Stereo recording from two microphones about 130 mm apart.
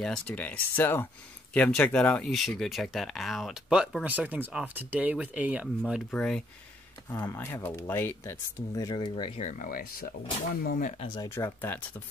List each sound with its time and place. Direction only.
0.0 s speech: 10° left (ahead or behind)
7.3 s speech: 20° left (ahead or behind); by 9.3 s 40° left (ahead or behind)
9.4 s speech: 75° left (ahead or behind)
11.1 s speech: 25° left (ahead or behind)